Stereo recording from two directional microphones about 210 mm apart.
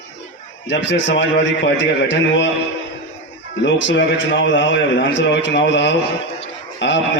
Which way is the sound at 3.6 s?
60° left (ahead or behind).